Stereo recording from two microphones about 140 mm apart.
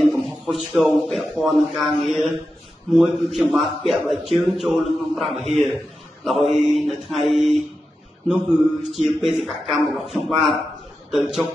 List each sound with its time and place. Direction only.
0.1 s a man's voice: centre (ahead or behind)